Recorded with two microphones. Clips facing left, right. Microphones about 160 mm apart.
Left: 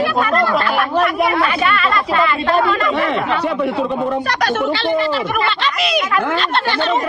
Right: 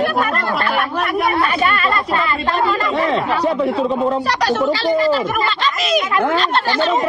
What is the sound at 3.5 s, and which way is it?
Speech, 65° left (ahead or behind).